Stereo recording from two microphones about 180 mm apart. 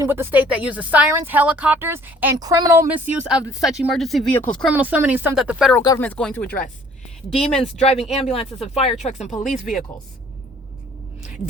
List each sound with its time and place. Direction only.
0.0 s a woman's voice: 10° right (ahead or behind)
2.9 s speech: 5° right (ahead or behind)
4.7 s speech: 10° right (ahead or behind)
5.8 s speech: 20° left (ahead or behind)
6.1 s speech: 5° left (ahead or behind)
7.8 s speech: 40° left (ahead or behind)